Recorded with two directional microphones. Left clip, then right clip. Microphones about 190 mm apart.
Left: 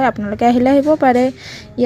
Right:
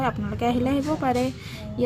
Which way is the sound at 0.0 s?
40° left (ahead or behind).